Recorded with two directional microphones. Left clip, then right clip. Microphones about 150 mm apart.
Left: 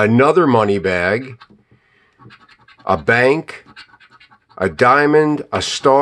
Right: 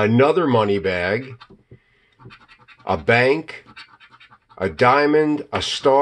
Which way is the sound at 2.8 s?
35° left (ahead or behind).